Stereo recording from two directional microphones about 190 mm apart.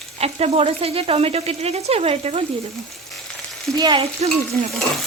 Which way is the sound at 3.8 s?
20° right (ahead or behind).